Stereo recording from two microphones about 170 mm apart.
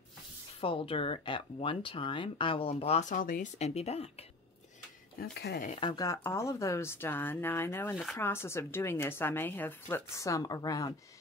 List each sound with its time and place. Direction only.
0.6 s speech: 30° left (ahead or behind)
5.2 s speech: 70° left (ahead or behind)
5.8 s a woman's voice: 25° left (ahead or behind)
7.9 s speech: centre (ahead or behind)
8.2 s a woman's voice: 15° left (ahead or behind)